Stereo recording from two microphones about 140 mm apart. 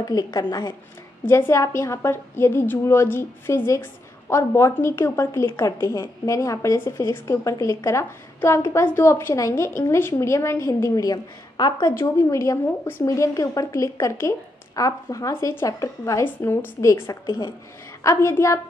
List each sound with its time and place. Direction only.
0.0 s a woman's voice: 25° left (ahead or behind)